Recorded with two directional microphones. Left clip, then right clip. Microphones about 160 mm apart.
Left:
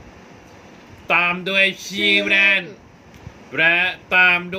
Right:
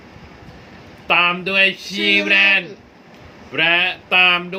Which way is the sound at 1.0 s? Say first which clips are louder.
Right 2 dB; 25° left (ahead or behind).